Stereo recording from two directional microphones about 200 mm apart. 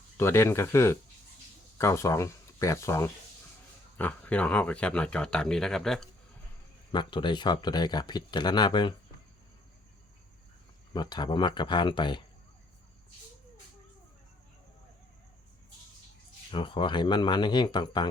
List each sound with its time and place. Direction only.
0.2 s speech: 15° left (ahead or behind)
6.9 s speech: 25° left (ahead or behind)
10.9 s speech: 20° left (ahead or behind)
16.5 s speech: 25° left (ahead or behind)